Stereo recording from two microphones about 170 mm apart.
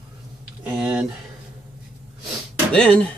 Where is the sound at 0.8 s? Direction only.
5° right (ahead or behind).